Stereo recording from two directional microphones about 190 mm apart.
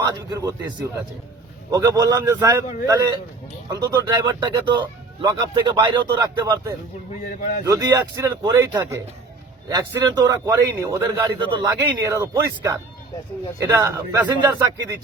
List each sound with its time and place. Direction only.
0.1 s speech: 20° right (ahead or behind)
1.7 s a man's voice: 15° right (ahead or behind)